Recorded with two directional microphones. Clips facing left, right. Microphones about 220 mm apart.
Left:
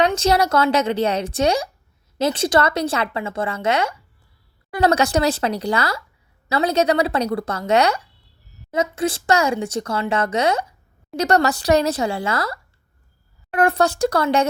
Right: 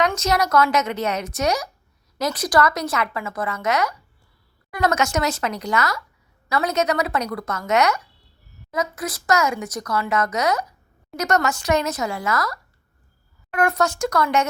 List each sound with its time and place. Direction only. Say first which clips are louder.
0.0 s a woman's voice: left 3 dB; 30° left (ahead or behind)